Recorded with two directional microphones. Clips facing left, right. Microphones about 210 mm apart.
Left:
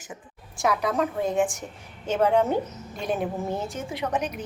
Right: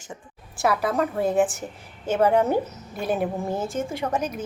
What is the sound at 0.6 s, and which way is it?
A woman's voice, 5° right (ahead or behind).